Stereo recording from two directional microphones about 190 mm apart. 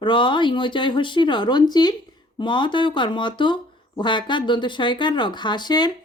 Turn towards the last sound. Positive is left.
turn(degrees=20)  # may be behind; listen again after turning